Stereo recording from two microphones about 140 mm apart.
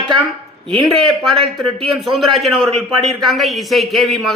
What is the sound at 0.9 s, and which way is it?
A man's voice, 5° left (ahead or behind).